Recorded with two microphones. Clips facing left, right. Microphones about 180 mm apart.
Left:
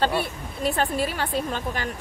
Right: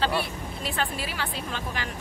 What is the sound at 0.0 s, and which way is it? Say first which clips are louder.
Speech: left 3 dB; 50° left (ahead or behind).